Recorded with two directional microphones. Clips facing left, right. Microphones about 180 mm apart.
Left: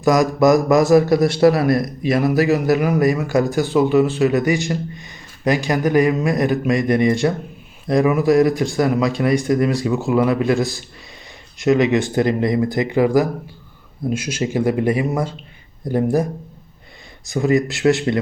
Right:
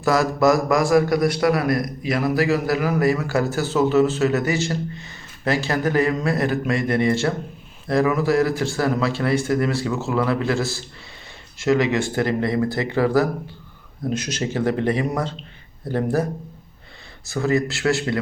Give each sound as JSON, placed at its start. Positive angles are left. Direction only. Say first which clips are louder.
{"t": 0.0, "sound": "a man's voice", "louder": "left 3 dB", "side_deg": 15}
{"t": 17.2, "sound": "speech", "louder": "left 4 dB", "side_deg": 15}